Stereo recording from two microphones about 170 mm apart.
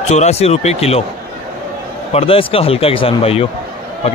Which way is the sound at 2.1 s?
35° left (ahead or behind).